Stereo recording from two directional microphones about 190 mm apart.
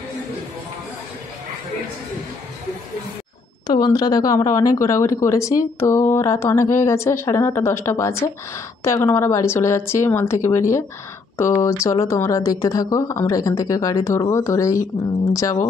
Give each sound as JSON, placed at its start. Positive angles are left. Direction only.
{"t": 3.6, "sound": "speech", "side_deg": 20}